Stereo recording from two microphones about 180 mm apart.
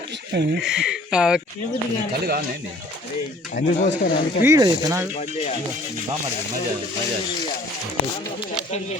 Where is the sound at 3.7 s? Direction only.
40° left (ahead or behind).